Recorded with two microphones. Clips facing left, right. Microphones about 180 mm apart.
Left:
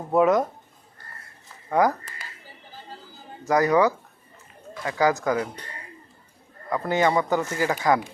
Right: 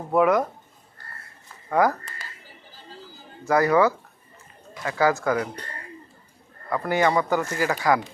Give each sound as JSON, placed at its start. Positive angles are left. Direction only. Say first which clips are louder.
{"t": 0.1, "sound": "speech", "louder": "even", "side_deg": 20}
{"t": 1.7, "sound": "speech", "louder": "even", "side_deg": 20}
{"t": 3.4, "sound": "speech", "louder": "even", "side_deg": 20}
{"t": 6.7, "sound": "speech", "louder": "even", "side_deg": 20}